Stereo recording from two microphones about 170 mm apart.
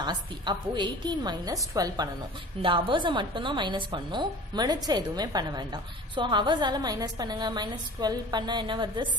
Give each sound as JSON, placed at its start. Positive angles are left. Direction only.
{"t": 0.0, "sound": "a woman's voice", "side_deg": -25}